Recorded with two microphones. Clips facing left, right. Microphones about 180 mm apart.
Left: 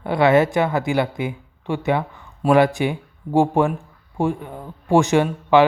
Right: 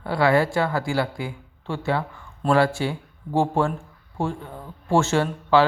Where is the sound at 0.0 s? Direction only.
20° left (ahead or behind).